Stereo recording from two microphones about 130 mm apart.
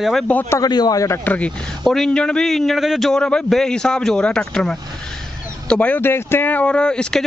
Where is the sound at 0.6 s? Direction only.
30° left (ahead or behind).